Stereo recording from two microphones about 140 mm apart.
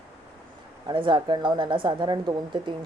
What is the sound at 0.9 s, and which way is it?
Speech, 35° right (ahead or behind).